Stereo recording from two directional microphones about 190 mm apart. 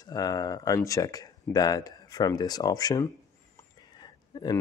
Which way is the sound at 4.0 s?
20° left (ahead or behind).